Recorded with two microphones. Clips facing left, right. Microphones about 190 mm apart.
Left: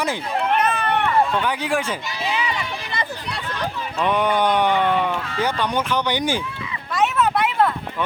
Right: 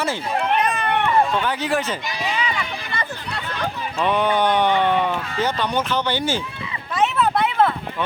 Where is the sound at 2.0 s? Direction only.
15° right (ahead or behind).